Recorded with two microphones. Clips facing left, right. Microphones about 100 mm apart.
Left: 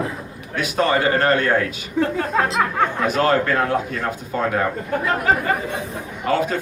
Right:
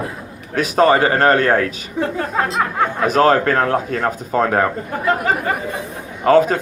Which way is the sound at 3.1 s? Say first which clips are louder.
Right 7 dB; 45° right (ahead or behind).